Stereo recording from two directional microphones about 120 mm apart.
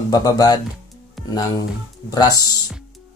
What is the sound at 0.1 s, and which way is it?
Speech, 35° left (ahead or behind).